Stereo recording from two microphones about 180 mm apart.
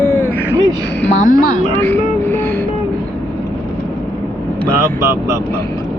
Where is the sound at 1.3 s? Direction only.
50° left (ahead or behind).